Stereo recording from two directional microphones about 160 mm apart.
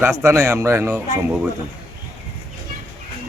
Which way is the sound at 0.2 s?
20° right (ahead or behind).